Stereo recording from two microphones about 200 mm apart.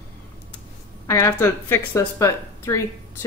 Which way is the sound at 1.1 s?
15° left (ahead or behind).